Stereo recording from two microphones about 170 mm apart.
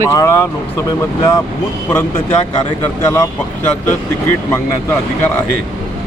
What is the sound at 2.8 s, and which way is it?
Speech, 15° left (ahead or behind).